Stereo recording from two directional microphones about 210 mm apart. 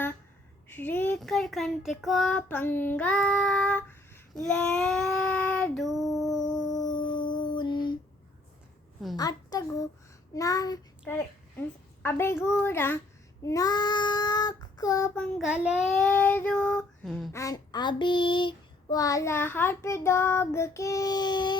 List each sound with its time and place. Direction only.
0.7 s child singing: 10° left (ahead or behind)
6.7 s a sound: 20° left (ahead or behind)
9.1 s a child's voice: 20° left (ahead or behind)
10.3 s a sound: 15° left (ahead or behind)
12.0 s child singing: 10° left (ahead or behind)
17.3 s child singing: 15° left (ahead or behind)